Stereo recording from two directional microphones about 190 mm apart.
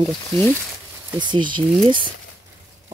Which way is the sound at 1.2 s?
25° right (ahead or behind).